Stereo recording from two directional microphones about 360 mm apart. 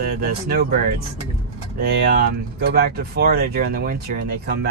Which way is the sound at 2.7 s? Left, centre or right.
Right.